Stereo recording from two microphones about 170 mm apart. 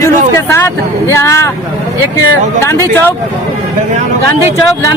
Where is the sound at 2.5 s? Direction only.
15° left (ahead or behind).